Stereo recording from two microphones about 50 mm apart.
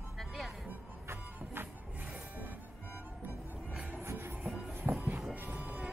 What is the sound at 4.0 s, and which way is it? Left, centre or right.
Music, right.